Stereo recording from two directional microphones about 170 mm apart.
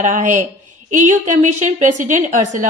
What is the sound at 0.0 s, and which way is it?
A woman's voice, 50° right (ahead or behind).